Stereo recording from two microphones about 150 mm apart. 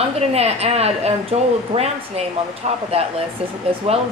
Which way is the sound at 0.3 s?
45° right (ahead or behind).